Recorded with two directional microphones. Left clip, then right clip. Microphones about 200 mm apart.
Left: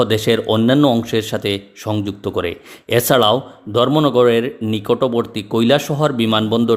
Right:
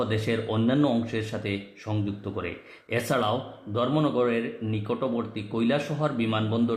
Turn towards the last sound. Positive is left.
turn(degrees=45)  # may be behind; listen again after turning